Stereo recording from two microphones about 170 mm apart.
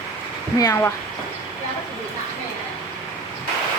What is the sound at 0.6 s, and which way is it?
Speech, 20° left (ahead or behind).